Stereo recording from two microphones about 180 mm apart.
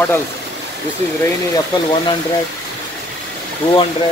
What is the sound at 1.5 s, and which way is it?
Speech, 25° left (ahead or behind).